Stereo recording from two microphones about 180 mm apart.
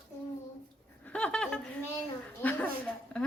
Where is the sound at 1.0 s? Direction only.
5° left (ahead or behind).